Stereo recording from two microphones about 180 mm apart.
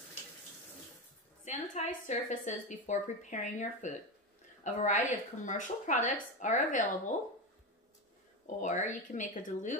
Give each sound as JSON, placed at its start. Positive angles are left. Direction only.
{"t": 1.4, "sound": "a woman's voice", "side_deg": 45}
{"t": 8.5, "sound": "a woman's voice", "side_deg": 45}